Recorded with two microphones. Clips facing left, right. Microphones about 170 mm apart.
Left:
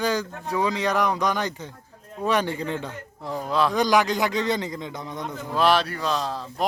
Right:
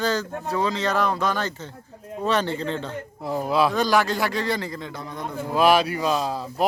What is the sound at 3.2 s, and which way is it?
Speech, 10° right (ahead or behind).